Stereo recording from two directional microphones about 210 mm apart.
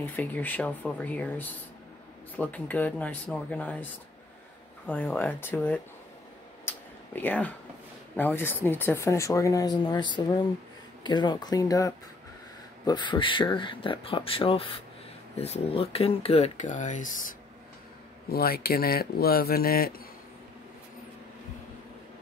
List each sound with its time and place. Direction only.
0.0 s speech: 10° left (ahead or behind)
4.8 s speech: 10° left (ahead or behind)
6.7 s a sound: 10° left (ahead or behind)
7.2 s speech: 5° left (ahead or behind); by 20.0 s 45° left (ahead or behind)